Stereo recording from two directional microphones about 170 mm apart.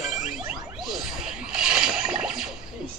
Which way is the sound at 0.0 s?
5° right (ahead or behind).